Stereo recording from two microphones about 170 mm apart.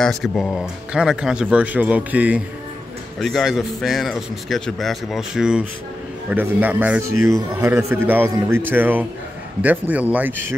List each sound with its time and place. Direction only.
0.0 s a man's voice: centre (ahead or behind)